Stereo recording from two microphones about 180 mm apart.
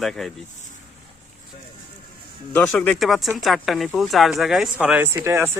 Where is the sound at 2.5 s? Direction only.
5° left (ahead or behind).